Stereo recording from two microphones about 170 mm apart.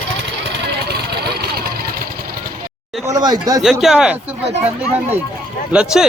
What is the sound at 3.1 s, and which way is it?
Speech, 25° right (ahead or behind).